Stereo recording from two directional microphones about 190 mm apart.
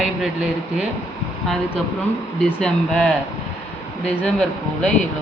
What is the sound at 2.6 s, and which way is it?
Speech, 5° left (ahead or behind).